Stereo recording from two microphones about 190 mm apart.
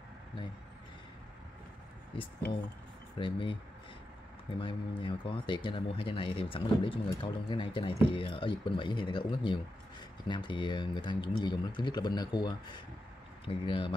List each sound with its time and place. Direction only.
3.2 s speech: 25° left (ahead or behind)
4.6 s speech: 25° left (ahead or behind)